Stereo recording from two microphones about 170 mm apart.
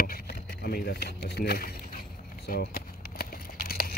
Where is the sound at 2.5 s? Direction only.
65° left (ahead or behind).